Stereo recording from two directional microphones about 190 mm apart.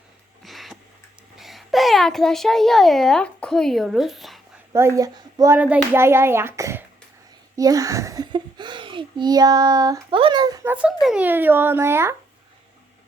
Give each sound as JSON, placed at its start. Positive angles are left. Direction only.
{"t": 0.4, "sound": "a sound", "side_deg": 0}
{"t": 1.4, "sound": "a child's voice", "side_deg": 0}
{"t": 4.7, "sound": "a child's voice", "side_deg": -15}
{"t": 5.5, "sound": "a child's voice", "side_deg": -10}